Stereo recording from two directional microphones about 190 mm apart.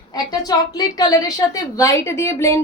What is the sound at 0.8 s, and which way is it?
A woman's voice, 20° left (ahead or behind).